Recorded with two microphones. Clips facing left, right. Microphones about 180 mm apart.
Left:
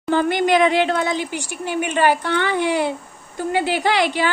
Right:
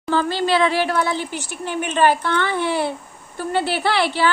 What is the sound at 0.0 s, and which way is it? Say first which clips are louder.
A woman's voice: left 2 dB; 20° left (ahead or behind).